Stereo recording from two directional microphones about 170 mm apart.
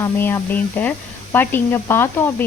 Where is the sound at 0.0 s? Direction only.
15° left (ahead or behind).